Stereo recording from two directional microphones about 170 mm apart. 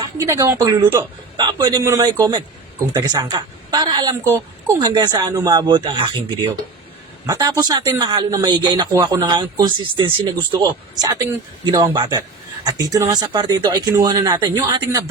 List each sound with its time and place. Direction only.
0.0 s a man's voice: 20° right (ahead or behind)